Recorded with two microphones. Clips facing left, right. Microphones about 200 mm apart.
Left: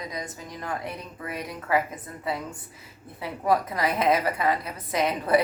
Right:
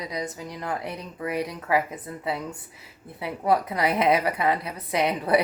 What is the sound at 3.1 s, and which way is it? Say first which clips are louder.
A woman's voice: right 1 dB; 25° right (ahead or behind).